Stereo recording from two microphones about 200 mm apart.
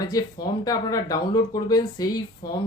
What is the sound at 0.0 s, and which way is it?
Speech, 20° left (ahead or behind).